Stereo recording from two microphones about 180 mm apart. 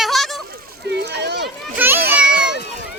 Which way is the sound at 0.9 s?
70° right (ahead or behind).